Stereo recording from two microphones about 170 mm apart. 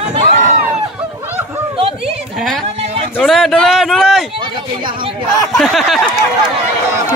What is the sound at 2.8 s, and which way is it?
Speech, 40° right (ahead or behind).